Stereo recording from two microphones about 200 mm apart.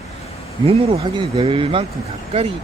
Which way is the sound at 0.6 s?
30° right (ahead or behind).